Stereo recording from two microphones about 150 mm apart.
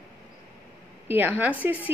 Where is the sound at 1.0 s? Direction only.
15° right (ahead or behind).